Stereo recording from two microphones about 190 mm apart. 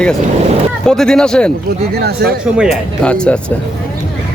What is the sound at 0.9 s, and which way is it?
Speech, 5° left (ahead or behind).